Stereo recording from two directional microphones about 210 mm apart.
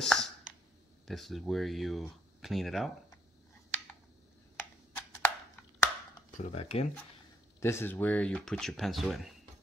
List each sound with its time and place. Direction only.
0.0 s clicking: centre (ahead or behind)
1.0 s speech: centre (ahead or behind)
5.2 s a sound: 10° left (ahead or behind)
6.3 s speech: 30° left (ahead or behind)
7.6 s speech: 10° left (ahead or behind)